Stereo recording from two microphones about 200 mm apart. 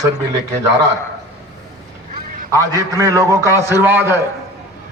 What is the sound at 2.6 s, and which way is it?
A man's voice, 15° right (ahead or behind).